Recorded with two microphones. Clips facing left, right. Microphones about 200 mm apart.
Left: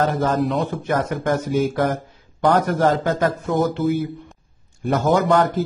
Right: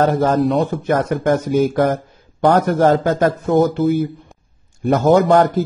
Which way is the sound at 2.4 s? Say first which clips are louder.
Right 4 dB; 50° right (ahead or behind).